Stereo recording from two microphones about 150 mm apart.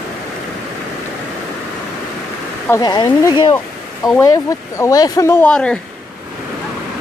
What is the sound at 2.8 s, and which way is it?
Speech, 30° left (ahead or behind).